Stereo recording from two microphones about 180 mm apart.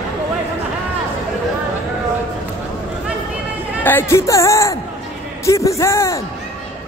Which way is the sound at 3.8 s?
15° left (ahead or behind).